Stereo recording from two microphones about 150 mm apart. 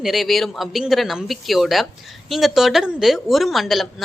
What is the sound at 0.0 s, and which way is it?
A woman's voice, centre (ahead or behind).